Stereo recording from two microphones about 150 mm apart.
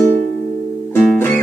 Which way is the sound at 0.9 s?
15° left (ahead or behind).